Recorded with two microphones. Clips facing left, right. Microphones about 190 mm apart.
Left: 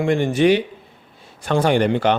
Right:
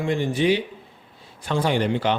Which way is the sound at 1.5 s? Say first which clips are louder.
Left 5 dB; 60° left (ahead or behind).